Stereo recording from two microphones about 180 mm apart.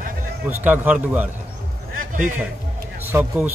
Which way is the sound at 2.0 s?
50° right (ahead or behind).